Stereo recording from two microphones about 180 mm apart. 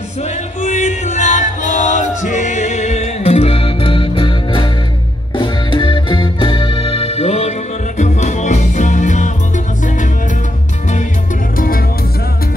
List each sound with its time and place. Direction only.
0.6 s music: 40° left (ahead or behind)
11.5 s music: 55° left (ahead or behind)